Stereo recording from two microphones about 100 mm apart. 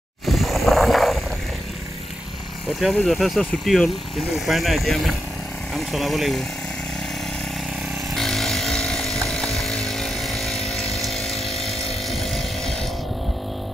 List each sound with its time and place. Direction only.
0.3 s vehicle: centre (ahead or behind)
2.8 s speech: centre (ahead or behind)
8.1 s vehicle: 5° left (ahead or behind)